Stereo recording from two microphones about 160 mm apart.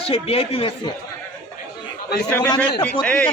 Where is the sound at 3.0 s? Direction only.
5° left (ahead or behind).